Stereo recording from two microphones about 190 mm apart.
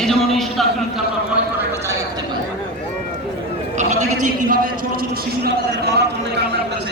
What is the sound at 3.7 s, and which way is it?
A man's voice, 40° right (ahead or behind).